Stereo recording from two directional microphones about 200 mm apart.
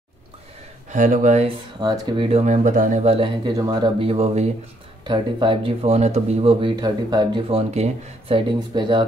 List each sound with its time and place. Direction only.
0.8 s speech: 40° right (ahead or behind)
1.8 s speech: 20° right (ahead or behind)